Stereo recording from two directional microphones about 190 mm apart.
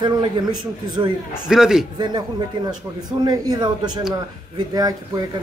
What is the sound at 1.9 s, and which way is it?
Speech, 20° right (ahead or behind).